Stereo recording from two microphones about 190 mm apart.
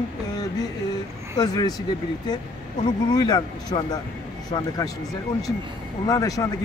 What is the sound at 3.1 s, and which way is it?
Speech, 20° left (ahead or behind).